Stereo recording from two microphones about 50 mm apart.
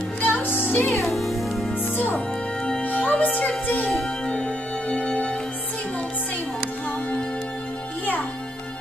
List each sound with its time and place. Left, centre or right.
0.2 s music: left
1.0 s music: centre
2.1 s music: left
4.3 s music: left